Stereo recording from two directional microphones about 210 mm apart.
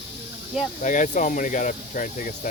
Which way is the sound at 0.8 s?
35° left (ahead or behind).